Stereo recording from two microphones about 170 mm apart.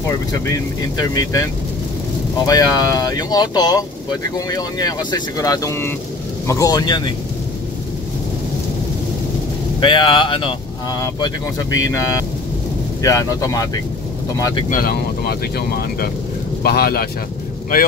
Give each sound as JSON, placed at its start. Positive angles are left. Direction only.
{"t": 0.9, "sound": "speech", "side_deg": 20}
{"t": 9.8, "sound": "speech", "side_deg": 30}
{"t": 14.7, "sound": "speech", "side_deg": 60}